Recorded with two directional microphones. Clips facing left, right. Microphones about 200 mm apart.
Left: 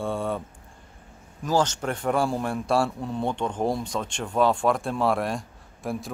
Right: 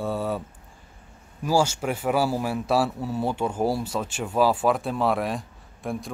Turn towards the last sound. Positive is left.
turn(degrees=0)  # may be behind; listen again after turning